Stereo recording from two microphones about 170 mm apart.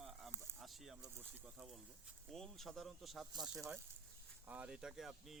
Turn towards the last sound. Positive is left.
turn(degrees=0)  # may be behind; listen again after turning